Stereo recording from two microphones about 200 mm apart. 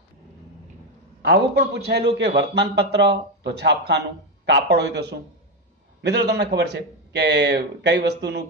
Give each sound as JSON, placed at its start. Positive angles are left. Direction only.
{"t": 1.2, "sound": "a man's voice", "side_deg": -55}